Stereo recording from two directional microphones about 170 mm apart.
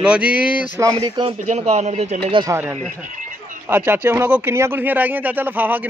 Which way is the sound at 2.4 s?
15° right (ahead or behind).